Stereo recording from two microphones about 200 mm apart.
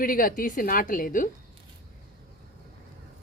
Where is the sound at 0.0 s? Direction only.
45° left (ahead or behind).